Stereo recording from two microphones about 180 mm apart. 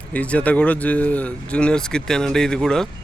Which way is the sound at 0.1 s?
5° left (ahead or behind).